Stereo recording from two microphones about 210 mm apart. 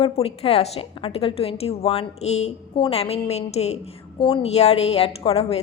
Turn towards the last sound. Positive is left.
turn(degrees=30)  # may be behind; listen again after turning